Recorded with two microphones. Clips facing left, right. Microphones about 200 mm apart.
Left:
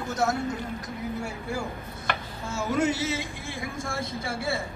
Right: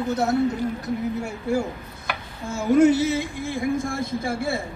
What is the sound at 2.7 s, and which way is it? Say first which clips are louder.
Speech: right 10 dB; 55° right (ahead or behind).